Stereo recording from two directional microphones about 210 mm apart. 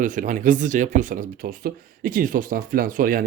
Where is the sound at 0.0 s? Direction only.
40° right (ahead or behind).